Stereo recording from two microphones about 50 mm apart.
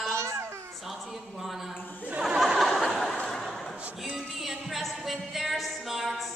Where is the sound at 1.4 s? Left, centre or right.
Centre.